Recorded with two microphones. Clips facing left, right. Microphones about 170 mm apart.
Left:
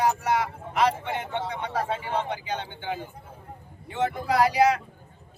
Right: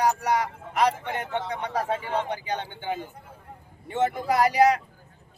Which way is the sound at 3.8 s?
45° right (ahead or behind).